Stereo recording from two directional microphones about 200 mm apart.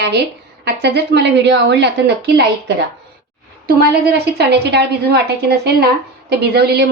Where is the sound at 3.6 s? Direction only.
50° right (ahead or behind).